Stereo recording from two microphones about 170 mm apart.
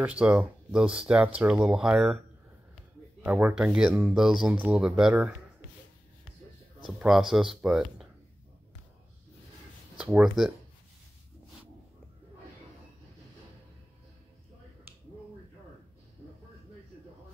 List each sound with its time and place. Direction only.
0.0 s speech: 5° right (ahead or behind)
3.3 s speech: 10° right (ahead or behind)
7.0 s speech: centre (ahead or behind)
9.9 s speech: 5° right (ahead or behind)